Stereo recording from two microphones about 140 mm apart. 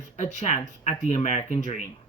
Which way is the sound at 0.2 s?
60° left (ahead or behind).